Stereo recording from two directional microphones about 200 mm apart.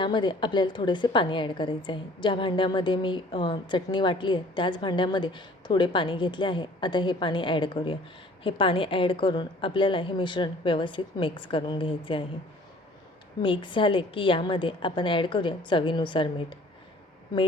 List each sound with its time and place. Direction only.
0.0 s a woman's voice: 25° left (ahead or behind)
13.4 s a woman's voice: 25° left (ahead or behind)